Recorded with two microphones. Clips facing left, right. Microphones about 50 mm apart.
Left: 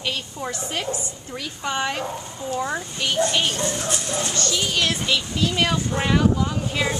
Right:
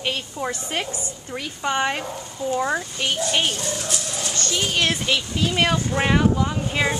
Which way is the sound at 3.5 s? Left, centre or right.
Left.